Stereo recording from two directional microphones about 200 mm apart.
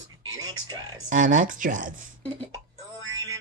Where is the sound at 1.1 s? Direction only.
40° right (ahead or behind).